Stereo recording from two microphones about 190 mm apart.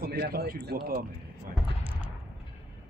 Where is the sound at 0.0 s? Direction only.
55° right (ahead or behind).